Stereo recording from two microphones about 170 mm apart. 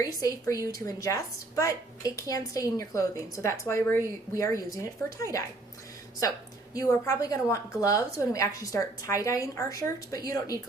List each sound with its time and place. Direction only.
0.0 s a woman's voice: 20° left (ahead or behind)
6.7 s a woman's voice: 15° left (ahead or behind)